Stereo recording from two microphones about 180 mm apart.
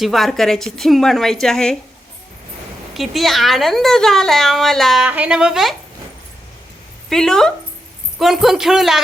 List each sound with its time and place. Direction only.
0.0 s speech: centre (ahead or behind)
2.9 s speech: centre (ahead or behind)
7.1 s speech: 5° left (ahead or behind)